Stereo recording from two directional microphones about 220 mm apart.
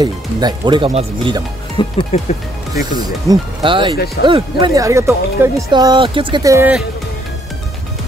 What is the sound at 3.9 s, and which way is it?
Speech, 45° left (ahead or behind).